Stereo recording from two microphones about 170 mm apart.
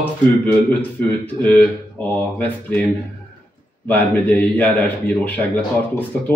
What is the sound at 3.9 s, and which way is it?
Speech, 10° left (ahead or behind).